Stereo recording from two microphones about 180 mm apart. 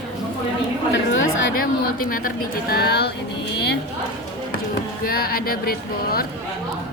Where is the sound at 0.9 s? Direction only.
90° left.